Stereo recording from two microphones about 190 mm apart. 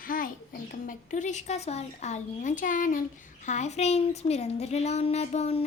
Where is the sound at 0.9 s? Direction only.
40° left (ahead or behind).